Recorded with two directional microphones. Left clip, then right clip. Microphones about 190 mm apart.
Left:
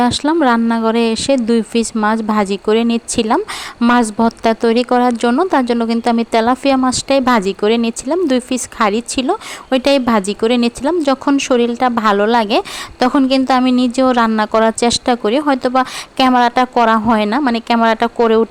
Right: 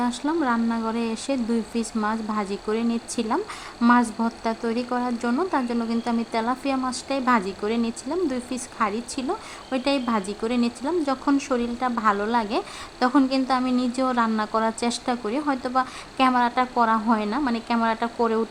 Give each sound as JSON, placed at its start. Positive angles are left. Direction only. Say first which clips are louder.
{"t": 0.0, "sound": "speech", "louder": "left 11 dB", "side_deg": 45}